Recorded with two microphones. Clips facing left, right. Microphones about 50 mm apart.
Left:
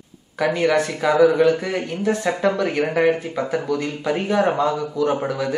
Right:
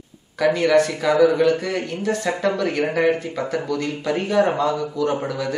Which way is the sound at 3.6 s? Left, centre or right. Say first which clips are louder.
Left 1 dB; centre.